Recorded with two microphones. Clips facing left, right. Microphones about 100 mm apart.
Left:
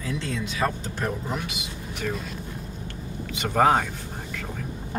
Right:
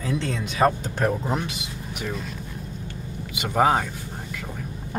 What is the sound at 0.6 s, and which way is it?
Speech, 45° right (ahead or behind).